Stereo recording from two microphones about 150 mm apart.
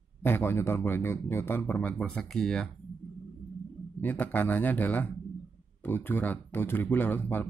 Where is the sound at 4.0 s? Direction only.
10° left (ahead or behind).